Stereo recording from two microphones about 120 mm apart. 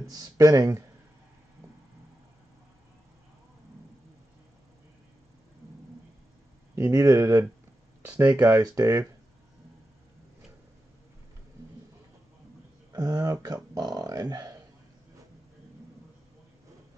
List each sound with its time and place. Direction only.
0.1 s speech: 30° right (ahead or behind)
6.7 s speech: 25° right (ahead or behind)
8.1 s speech: 10° right (ahead or behind); by 9.0 s 30° right (ahead or behind)
12.9 s speech: 30° right (ahead or behind)